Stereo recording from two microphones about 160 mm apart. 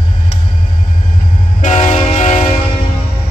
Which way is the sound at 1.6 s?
50° left (ahead or behind).